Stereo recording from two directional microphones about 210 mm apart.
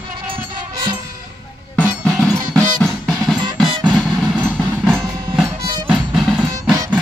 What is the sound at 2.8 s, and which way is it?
Drum, centre (ahead or behind).